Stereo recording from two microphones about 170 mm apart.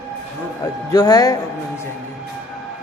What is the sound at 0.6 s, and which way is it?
Speech, 20° left (ahead or behind).